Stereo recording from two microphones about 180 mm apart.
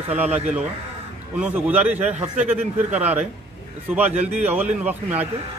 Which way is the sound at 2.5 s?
10° right (ahead or behind).